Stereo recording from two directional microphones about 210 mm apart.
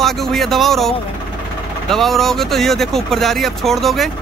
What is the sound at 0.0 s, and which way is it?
Speech, centre (ahead or behind).